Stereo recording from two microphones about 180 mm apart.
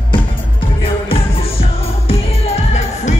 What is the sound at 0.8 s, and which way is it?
Music, 30° left (ahead or behind).